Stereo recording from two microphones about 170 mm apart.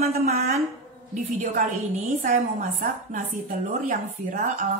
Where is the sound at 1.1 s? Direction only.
50° right (ahead or behind).